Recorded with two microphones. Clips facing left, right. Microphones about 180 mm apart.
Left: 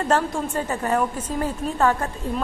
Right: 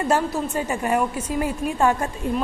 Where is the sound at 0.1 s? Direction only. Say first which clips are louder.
Left 1 dB; 10° right (ahead or behind).